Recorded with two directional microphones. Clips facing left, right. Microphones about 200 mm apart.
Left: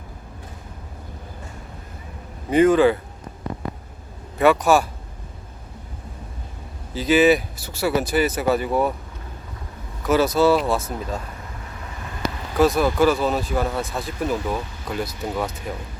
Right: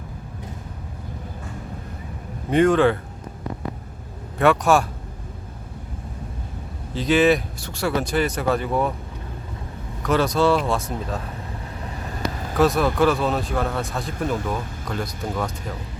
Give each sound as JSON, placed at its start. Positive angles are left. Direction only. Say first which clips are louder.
{"t": 2.5, "sound": "speech", "louder": "left 2 dB", "side_deg": 0}
{"t": 4.4, "sound": "speech", "louder": "left 1 dB", "side_deg": 0}
{"t": 6.9, "sound": "speech", "louder": "left 1 dB", "side_deg": 5}
{"t": 10.0, "sound": "speech", "louder": "left 2 dB", "side_deg": 5}
{"t": 12.5, "sound": "speech", "louder": "left 1 dB", "side_deg": 0}